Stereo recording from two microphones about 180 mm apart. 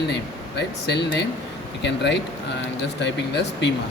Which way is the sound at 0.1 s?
70° left (ahead or behind).